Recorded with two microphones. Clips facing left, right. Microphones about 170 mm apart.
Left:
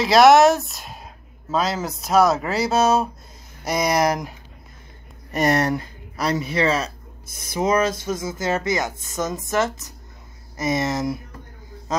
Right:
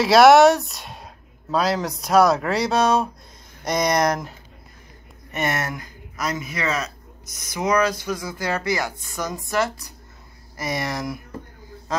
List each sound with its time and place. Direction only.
0.0 s speech: centre (ahead or behind)
5.3 s speech: 35° left (ahead or behind)